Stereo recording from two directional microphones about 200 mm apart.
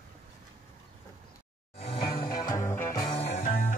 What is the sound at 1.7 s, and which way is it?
Music, 30° left (ahead or behind).